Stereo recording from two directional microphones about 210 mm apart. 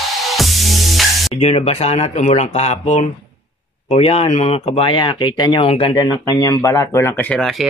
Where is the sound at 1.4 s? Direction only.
30° left (ahead or behind).